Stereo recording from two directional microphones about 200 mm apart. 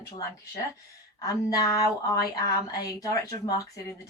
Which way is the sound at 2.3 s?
20° left (ahead or behind).